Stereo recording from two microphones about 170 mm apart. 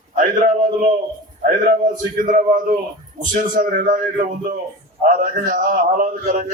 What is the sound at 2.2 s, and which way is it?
A man's voice, 50° right (ahead or behind).